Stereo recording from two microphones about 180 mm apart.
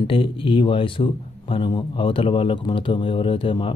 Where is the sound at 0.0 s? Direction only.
30° left (ahead or behind).